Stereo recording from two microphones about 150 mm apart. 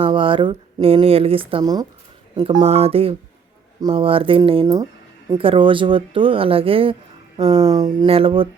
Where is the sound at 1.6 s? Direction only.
25° right (ahead or behind).